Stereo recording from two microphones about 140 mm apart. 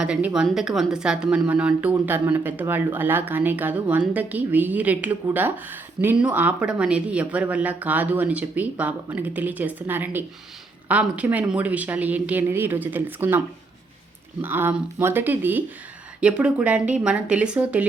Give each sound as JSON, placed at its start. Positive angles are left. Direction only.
{"t": 0.0, "sound": "speech", "side_deg": -10}
{"t": 14.4, "sound": "speech", "side_deg": -15}